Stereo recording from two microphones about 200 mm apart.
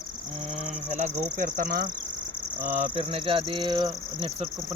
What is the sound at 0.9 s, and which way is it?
Speech, 35° right (ahead or behind).